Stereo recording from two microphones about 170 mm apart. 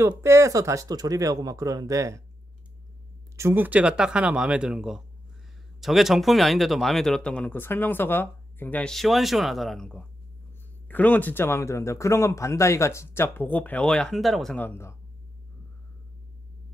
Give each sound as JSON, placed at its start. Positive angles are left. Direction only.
{"t": 0.0, "sound": "speech", "side_deg": -15}
{"t": 3.3, "sound": "speech", "side_deg": -15}